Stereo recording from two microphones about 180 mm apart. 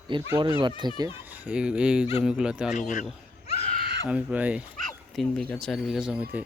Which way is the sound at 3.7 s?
55° right (ahead or behind).